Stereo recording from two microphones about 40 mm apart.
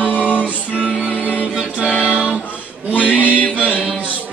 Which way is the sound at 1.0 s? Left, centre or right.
Left.